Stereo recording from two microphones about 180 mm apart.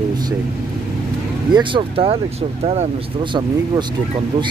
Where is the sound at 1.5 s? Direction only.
30° right (ahead or behind).